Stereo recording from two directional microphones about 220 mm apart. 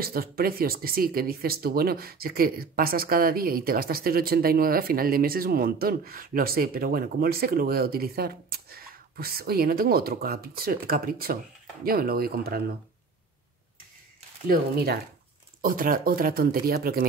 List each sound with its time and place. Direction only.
0.0 s speech: 40° right (ahead or behind)
15.6 s speech: 40° right (ahead or behind)